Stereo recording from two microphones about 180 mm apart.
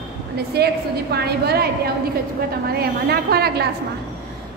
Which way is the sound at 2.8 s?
60° right (ahead or behind).